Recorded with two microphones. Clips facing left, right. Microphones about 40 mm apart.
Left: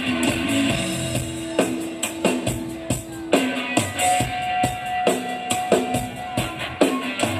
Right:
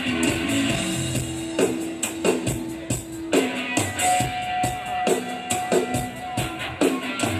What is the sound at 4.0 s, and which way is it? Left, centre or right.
Music, left.